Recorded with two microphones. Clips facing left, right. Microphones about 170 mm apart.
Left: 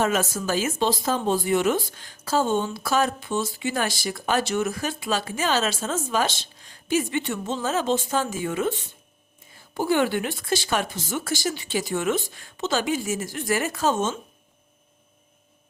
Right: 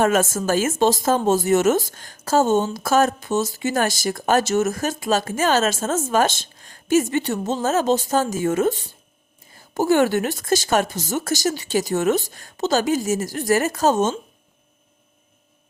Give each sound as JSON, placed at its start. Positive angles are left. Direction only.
{"t": 0.0, "sound": "speech", "side_deg": -50}